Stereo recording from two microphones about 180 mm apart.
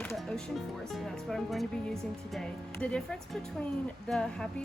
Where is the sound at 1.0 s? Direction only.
Centre (ahead or behind).